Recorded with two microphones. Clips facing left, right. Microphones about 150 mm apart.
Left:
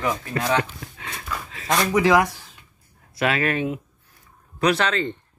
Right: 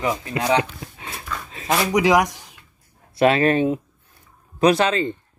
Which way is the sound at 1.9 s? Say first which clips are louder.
Right 1 dB; 15° right (ahead or behind).